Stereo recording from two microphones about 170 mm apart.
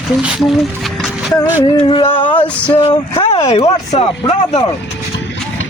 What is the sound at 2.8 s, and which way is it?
Speech, 35° left (ahead or behind).